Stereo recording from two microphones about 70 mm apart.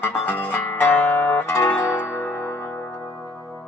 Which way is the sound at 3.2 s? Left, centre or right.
Centre.